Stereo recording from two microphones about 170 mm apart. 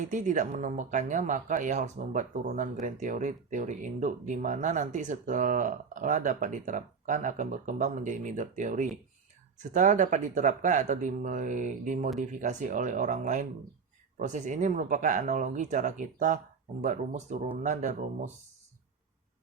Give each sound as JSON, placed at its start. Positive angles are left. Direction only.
{"t": 0.0, "sound": "speech", "side_deg": -45}